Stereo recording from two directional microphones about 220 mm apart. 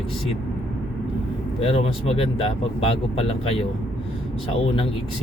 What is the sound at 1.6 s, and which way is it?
Speech, 25° left (ahead or behind).